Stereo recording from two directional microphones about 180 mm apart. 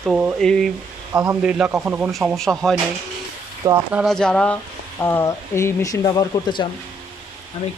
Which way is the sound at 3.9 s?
5° left (ahead or behind).